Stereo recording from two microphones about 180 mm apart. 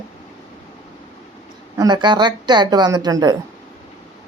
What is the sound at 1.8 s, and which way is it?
Speech, 25° right (ahead or behind).